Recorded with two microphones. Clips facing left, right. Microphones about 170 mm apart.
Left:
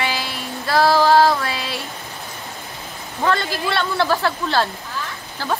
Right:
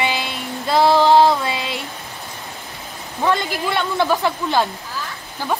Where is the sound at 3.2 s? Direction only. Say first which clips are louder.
Right 1 dB; 15° right (ahead or behind).